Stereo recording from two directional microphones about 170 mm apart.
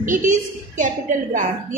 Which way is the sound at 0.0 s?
50° right (ahead or behind).